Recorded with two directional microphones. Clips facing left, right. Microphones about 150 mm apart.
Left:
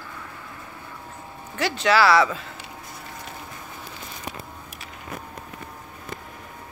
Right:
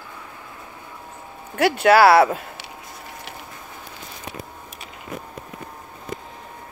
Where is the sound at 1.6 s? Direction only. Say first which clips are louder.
Right 6 dB; 55° right (ahead or behind).